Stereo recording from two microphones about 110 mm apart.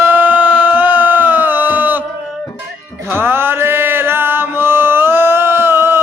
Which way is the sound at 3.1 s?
20° right (ahead or behind).